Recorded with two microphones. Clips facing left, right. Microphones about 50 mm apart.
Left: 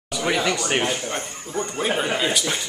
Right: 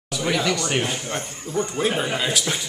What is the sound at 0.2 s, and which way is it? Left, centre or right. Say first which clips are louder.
Speech: even; centre.